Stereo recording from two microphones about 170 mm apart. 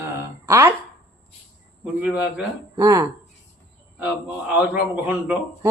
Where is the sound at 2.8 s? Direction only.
20° right (ahead or behind).